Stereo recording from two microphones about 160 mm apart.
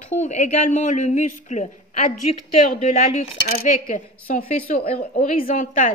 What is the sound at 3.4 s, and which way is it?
A woman's voice, 70° left (ahead or behind).